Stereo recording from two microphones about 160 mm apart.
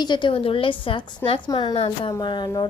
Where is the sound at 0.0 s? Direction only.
30° left (ahead or behind).